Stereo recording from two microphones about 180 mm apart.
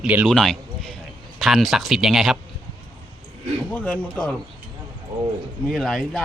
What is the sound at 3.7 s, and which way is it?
Speech, 10° left (ahead or behind).